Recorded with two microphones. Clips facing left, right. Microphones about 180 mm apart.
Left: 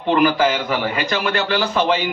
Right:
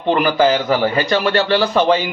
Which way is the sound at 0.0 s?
30° right (ahead or behind).